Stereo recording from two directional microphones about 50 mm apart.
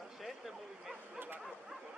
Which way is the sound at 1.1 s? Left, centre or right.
Right.